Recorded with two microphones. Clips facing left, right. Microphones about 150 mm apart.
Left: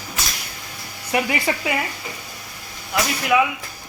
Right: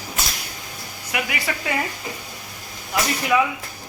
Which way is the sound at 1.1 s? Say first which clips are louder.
Left 6 dB; 30° left (ahead or behind).